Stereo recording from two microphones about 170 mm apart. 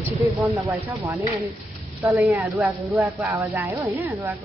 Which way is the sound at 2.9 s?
15° right (ahead or behind).